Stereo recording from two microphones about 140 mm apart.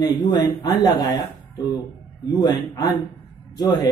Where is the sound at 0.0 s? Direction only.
30° left (ahead or behind).